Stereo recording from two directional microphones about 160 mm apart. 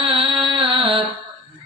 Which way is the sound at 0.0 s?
35° right (ahead or behind).